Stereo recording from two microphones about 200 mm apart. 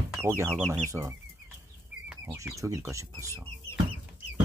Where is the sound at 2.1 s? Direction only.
15° right (ahead or behind).